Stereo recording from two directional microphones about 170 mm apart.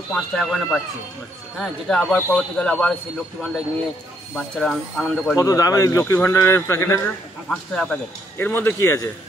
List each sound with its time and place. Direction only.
0.1 s a man's voice: centre (ahead or behind)
4.4 s speech: 5° left (ahead or behind)
5.3 s speech: 20° left (ahead or behind)
7.4 s speech: 5° left (ahead or behind); by 9.1 s 20° left (ahead or behind)